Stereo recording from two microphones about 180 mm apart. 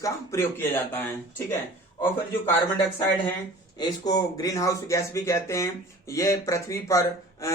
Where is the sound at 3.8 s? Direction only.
20° left (ahead or behind).